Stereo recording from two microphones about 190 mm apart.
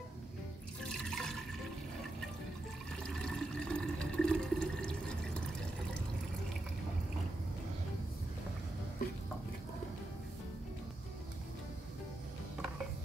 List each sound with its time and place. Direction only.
0.9 s water: centre (ahead or behind)
3.0 s water: 5° left (ahead or behind)